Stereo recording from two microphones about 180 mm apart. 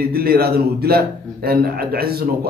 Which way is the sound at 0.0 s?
55° right (ahead or behind).